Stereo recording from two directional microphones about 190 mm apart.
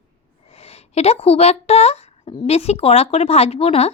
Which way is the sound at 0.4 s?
30° left (ahead or behind).